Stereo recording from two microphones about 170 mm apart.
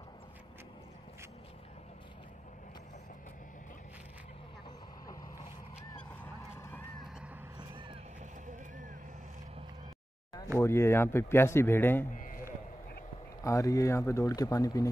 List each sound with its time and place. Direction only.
6.2 s boat: 10° left (ahead or behind)
7.5 s a sound: 30° right (ahead or behind)
10.6 s speech: 15° left (ahead or behind)
13.4 s speech: 20° left (ahead or behind)